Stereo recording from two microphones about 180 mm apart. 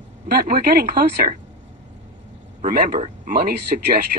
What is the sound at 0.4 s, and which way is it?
Speech, 55° right (ahead or behind).